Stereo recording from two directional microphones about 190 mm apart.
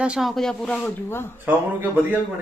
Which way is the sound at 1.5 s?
10° right (ahead or behind).